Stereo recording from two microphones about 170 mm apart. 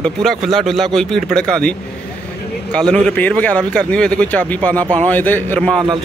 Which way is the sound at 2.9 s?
10° left (ahead or behind).